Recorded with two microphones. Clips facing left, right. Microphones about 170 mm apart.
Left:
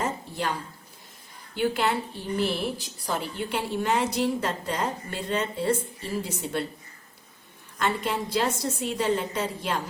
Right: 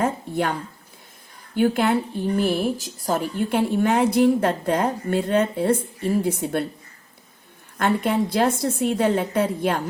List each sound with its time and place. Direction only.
0.0 s speech: 55° right (ahead or behind)
1.5 s a woman's voice: 50° right (ahead or behind)
7.8 s a woman's voice: 55° right (ahead or behind)